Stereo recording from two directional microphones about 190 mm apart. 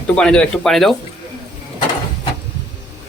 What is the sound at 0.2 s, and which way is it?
Speech, 5° left (ahead or behind).